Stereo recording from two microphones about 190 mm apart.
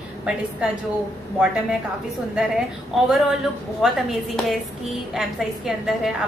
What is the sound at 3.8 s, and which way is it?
A woman's voice, centre (ahead or behind).